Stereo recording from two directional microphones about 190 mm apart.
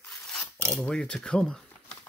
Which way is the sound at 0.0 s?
5° left (ahead or behind).